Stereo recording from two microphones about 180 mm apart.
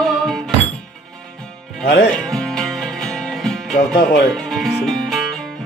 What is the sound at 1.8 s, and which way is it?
Speech, 65° left (ahead or behind).